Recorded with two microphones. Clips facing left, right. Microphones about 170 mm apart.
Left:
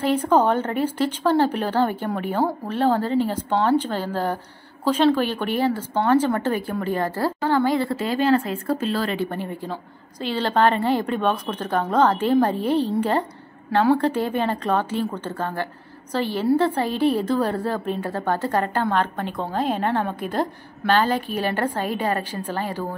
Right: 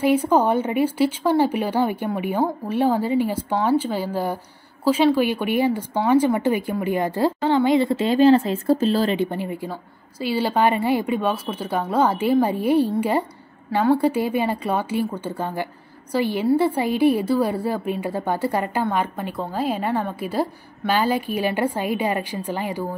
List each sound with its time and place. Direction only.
0.0 s a woman's voice: 10° right (ahead or behind)